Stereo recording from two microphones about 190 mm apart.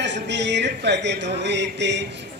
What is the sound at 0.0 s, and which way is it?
A man's voice, 65° right (ahead or behind).